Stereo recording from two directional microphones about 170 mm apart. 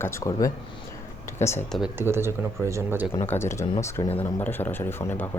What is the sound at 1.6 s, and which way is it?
Speech, centre (ahead or behind).